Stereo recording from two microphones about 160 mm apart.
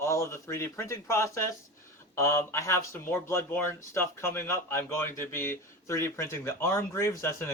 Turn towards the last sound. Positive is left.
turn(degrees=15)  # may be behind; listen again after turning